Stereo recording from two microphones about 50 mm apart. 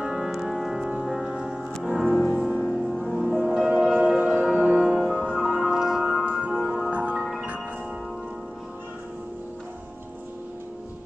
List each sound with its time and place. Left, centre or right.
0.0 s music: centre
2.0 s music: centre
2.3 s music: centre
2.6 s music: centre
3.4 s music: centre
3.9 s music: right
4.4 s music: right; by 6.9 s centre
6.9 s music: right